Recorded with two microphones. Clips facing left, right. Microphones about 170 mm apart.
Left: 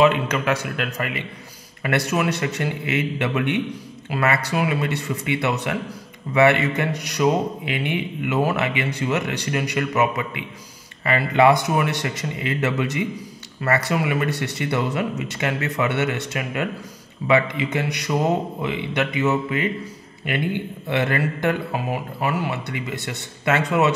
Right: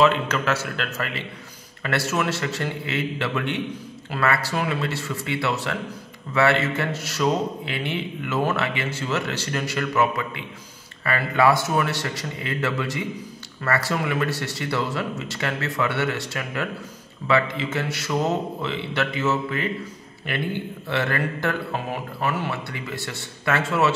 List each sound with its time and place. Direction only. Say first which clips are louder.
0.0 s a man's voice: left 2 dB; 15° left (ahead or behind)
20.9 s a man's voice: left 3 dB; 15° left (ahead or behind)